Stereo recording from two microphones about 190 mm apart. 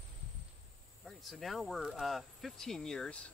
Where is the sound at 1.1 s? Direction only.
Centre (ahead or behind).